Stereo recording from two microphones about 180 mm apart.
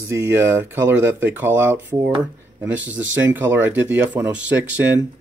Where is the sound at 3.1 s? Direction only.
10° right (ahead or behind).